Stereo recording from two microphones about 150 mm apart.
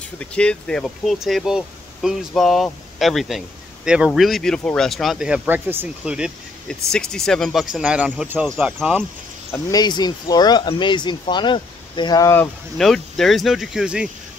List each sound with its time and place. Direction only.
0.2 s speech: 10° left (ahead or behind)
6.7 s speech: 5° left (ahead or behind)
7.8 s speech: 10° right (ahead or behind)
9.5 s speech: 25° left (ahead or behind)
12.7 s speech: centre (ahead or behind)